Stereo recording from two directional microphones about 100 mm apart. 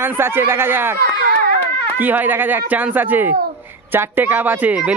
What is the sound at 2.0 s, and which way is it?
A man's voice, 20° right (ahead or behind).